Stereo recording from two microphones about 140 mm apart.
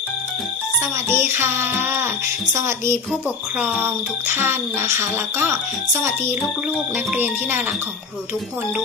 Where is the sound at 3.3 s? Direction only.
10° right (ahead or behind).